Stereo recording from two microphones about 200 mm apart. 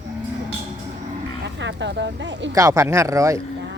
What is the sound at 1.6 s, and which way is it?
Speech, 65° right (ahead or behind).